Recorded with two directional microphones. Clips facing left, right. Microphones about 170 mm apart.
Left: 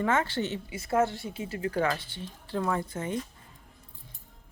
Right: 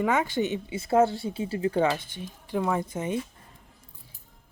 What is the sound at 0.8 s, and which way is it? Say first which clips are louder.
Speech: right 5 dB; 30° right (ahead or behind).